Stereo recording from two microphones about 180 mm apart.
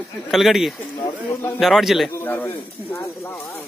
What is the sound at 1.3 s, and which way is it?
Speech, 15° left (ahead or behind).